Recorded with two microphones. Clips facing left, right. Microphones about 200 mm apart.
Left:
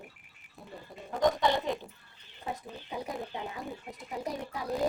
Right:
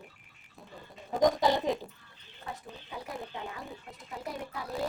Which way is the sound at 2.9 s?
20° left (ahead or behind).